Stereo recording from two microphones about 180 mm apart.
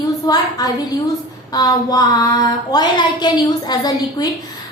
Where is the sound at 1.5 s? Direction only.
20° left (ahead or behind).